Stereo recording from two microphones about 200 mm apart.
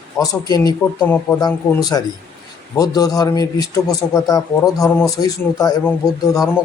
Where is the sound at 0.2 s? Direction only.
20° left (ahead or behind).